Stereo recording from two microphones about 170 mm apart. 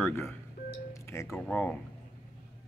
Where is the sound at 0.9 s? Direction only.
15° left (ahead or behind).